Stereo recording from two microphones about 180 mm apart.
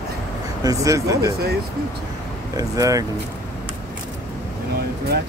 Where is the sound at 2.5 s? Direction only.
20° right (ahead or behind).